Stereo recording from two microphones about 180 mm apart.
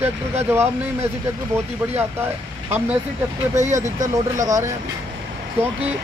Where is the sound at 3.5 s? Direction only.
40° right (ahead or behind).